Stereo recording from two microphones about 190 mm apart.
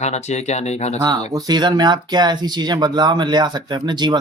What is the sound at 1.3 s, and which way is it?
Speech, 20° right (ahead or behind).